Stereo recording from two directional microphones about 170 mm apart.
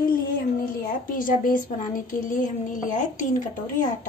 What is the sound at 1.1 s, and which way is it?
Speech, 55° left (ahead or behind).